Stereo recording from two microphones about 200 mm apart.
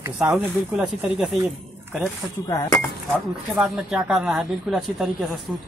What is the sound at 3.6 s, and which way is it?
Speech, 5° right (ahead or behind).